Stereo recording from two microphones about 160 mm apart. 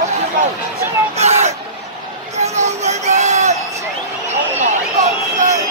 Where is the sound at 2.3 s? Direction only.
45° right (ahead or behind).